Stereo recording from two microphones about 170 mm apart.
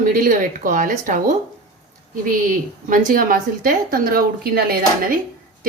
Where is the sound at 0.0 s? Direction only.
55° right (ahead or behind).